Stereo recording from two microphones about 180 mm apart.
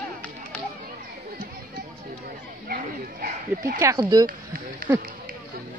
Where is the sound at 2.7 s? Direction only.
55° right (ahead or behind).